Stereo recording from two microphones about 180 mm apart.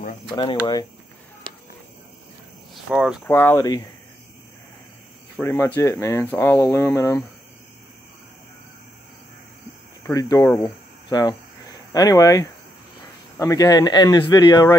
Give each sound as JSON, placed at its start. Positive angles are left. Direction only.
{"t": 2.7, "sound": "speech", "side_deg": -5}
{"t": 3.3, "sound": "speech", "side_deg": 10}
{"t": 5.4, "sound": "speech", "side_deg": 15}
{"t": 10.1, "sound": "speech", "side_deg": 20}
{"t": 11.1, "sound": "speech", "side_deg": 25}